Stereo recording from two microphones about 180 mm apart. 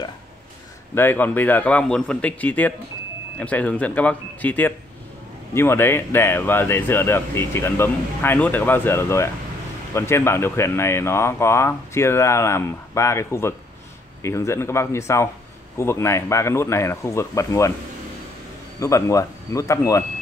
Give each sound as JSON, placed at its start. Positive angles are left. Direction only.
{"t": 0.9, "sound": "speech", "side_deg": 10}
{"t": 18.8, "sound": "speech", "side_deg": 15}